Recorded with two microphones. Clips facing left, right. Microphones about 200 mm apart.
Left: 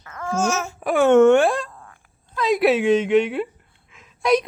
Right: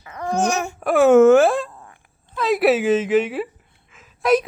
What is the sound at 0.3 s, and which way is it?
Speech, 15° right (ahead or behind).